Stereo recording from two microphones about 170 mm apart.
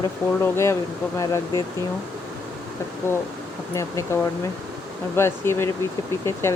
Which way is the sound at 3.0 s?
15° left (ahead or behind).